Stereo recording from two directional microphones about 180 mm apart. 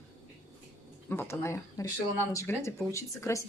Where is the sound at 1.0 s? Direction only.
15° left (ahead or behind).